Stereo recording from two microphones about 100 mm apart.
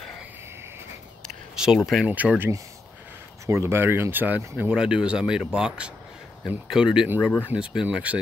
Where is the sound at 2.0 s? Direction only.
15° right (ahead or behind).